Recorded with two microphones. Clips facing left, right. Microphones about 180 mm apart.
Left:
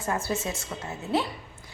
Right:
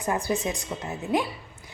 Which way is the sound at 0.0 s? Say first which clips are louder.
Right 3 dB; 15° right (ahead or behind).